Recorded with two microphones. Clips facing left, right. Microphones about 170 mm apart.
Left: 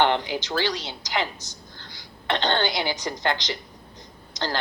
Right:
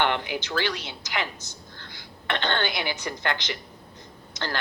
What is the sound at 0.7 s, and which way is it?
Speech, 35° left (ahead or behind).